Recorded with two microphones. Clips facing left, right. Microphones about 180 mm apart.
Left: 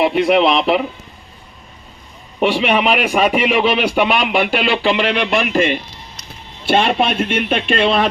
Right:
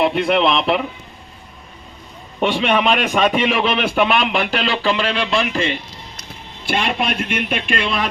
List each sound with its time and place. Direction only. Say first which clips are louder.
0.0 s a man's voice: left 3 dB; 5° left (ahead or behind)
2.4 s a man's voice: left 2 dB; 5° left (ahead or behind); by 8.1 s 25° left (ahead or behind)